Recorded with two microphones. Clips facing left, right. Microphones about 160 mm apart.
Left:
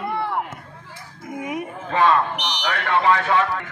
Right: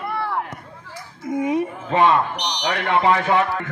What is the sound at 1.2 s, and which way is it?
A man's voice, 25° right (ahead or behind).